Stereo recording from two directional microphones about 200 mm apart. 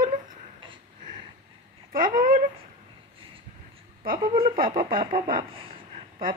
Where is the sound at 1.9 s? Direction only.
45° right (ahead or behind).